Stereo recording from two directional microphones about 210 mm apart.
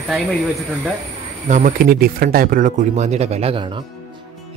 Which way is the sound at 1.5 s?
40° right (ahead or behind).